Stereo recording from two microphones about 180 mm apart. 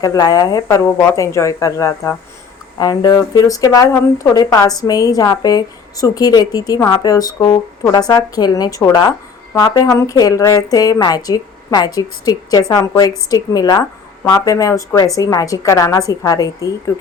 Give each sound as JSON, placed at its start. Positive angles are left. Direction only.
{"t": 0.0, "sound": "speech", "side_deg": 20}